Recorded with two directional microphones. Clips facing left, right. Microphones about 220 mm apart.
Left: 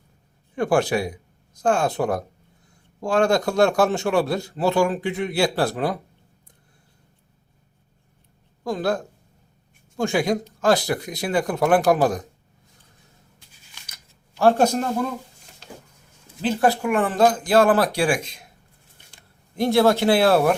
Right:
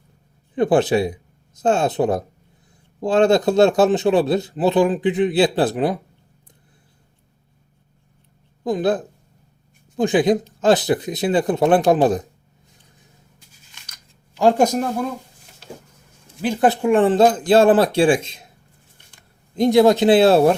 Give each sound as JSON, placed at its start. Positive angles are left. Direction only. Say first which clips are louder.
{"t": 0.5, "sound": "a man's voice", "louder": "right 4 dB", "side_deg": -20}
{"t": 8.6, "sound": "a man's voice", "louder": "right 4 dB", "side_deg": -20}
{"t": 14.3, "sound": "speech", "louder": "right 2 dB", "side_deg": -15}
{"t": 16.4, "sound": "a man's voice", "louder": "right 2 dB", "side_deg": -15}
{"t": 19.5, "sound": "a man's voice", "louder": "right 4 dB", "side_deg": -20}